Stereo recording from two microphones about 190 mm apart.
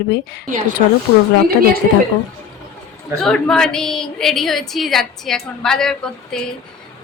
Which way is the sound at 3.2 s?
5° left (ahead or behind).